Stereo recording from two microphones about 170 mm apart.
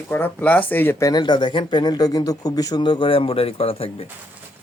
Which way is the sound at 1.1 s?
25° left (ahead or behind).